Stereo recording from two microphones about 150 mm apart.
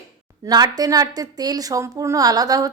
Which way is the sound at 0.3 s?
25° right (ahead or behind).